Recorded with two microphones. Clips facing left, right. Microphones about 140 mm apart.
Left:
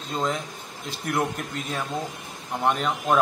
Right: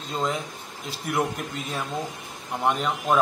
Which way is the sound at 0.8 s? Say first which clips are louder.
Even; 5° right (ahead or behind).